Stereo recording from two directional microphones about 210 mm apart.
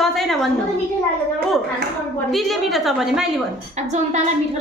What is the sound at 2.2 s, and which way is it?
A woman's voice, centre (ahead or behind).